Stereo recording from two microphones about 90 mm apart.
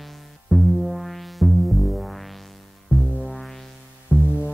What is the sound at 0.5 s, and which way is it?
Music, centre (ahead or behind).